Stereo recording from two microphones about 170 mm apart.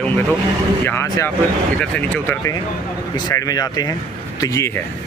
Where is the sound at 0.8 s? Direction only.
15° left (ahead or behind).